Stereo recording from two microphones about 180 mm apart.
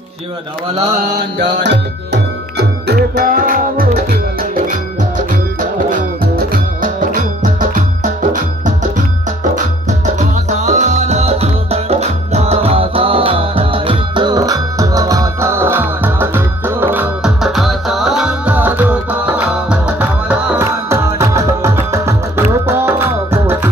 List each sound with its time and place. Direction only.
1.1 s music: 75° right (ahead or behind); by 4.0 s 55° right (ahead or behind)
6.5 s music: 50° right (ahead or behind)
10.1 s music: 40° right (ahead or behind); by 23.7 s 15° right (ahead or behind)